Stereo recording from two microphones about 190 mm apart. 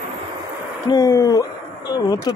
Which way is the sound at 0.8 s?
15° left (ahead or behind).